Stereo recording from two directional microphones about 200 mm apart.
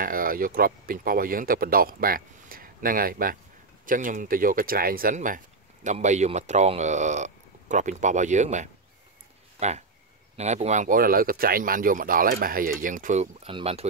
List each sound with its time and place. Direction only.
0.0 s speech: 45° right (ahead or behind); by 13.8 s 30° right (ahead or behind)